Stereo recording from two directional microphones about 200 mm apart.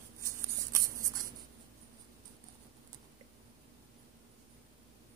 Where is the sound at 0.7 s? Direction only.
15° right (ahead or behind).